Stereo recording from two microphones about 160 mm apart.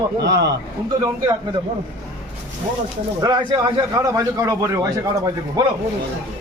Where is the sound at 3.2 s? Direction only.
25° right (ahead or behind).